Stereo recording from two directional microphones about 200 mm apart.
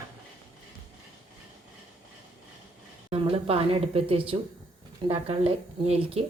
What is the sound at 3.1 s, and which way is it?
A woman's voice, 30° right (ahead or behind).